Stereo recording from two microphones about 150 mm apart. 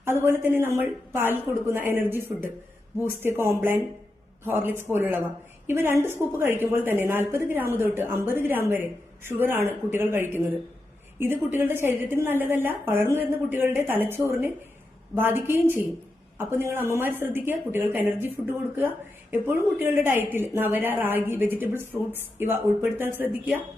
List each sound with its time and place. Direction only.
0.0 s a woman's voice: 15° right (ahead or behind)